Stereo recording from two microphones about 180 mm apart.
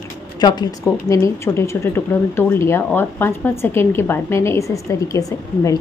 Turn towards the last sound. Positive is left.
turn(degrees=20)  # may be behind; listen again after turning